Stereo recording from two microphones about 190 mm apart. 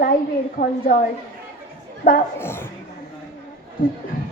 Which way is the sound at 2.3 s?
10° left (ahead or behind).